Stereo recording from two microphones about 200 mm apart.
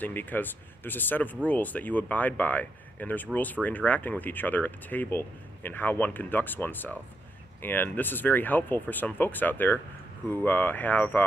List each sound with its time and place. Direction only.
0.0 s speech: 10° left (ahead or behind)